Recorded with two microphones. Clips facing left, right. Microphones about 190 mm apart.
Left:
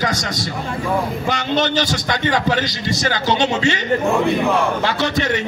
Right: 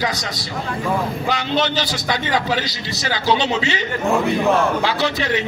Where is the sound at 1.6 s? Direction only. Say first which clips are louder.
Left 2 dB; 50° left (ahead or behind).